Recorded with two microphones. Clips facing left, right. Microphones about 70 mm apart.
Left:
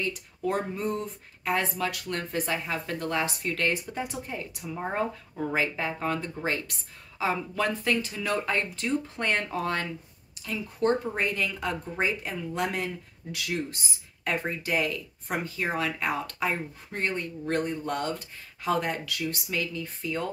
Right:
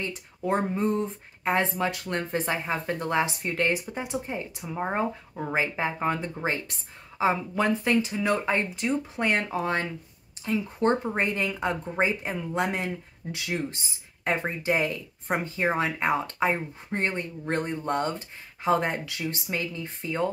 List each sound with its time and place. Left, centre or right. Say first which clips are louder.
0.0 s speech: left 1 dB; right
10.4 s speech: right 2 dB; right